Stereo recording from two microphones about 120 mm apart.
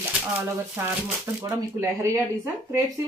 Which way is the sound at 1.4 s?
25° right (ahead or behind).